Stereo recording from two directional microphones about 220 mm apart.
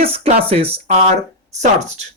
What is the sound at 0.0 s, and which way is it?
Speech, 25° right (ahead or behind).